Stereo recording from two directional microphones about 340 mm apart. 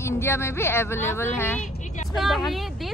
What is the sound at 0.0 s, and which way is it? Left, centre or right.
Speech, centre.